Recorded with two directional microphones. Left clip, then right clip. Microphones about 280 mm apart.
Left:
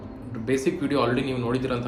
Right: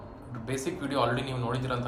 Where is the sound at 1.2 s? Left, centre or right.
Centre.